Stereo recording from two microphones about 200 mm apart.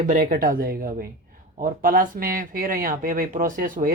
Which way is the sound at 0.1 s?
45° right (ahead or behind).